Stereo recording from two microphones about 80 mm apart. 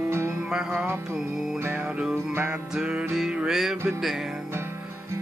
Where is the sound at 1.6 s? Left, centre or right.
Right.